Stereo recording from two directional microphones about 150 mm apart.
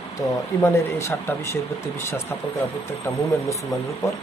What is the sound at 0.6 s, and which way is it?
Speech, 15° left (ahead or behind).